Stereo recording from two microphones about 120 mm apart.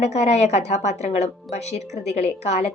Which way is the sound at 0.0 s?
65° left (ahead or behind).